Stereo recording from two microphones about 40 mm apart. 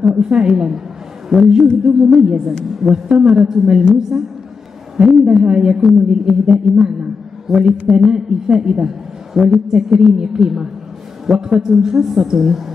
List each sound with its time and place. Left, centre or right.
0.0 s a woman's voice: centre
1.3 s speech: centre
1.9 s a woman's voice: centre